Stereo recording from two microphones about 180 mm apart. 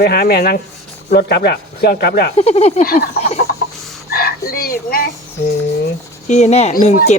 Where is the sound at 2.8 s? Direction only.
55° left (ahead or behind).